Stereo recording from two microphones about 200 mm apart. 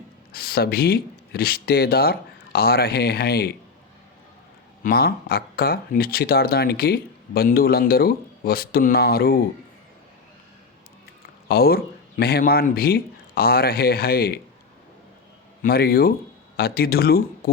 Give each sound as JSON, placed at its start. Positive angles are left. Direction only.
{"t": 0.3, "sound": "speech", "side_deg": 50}
{"t": 4.8, "sound": "speech", "side_deg": 50}
{"t": 11.4, "sound": "speech", "side_deg": 50}
{"t": 15.6, "sound": "speech", "side_deg": 50}